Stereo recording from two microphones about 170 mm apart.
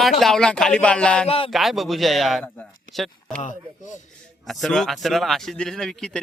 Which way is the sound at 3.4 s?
45° left (ahead or behind).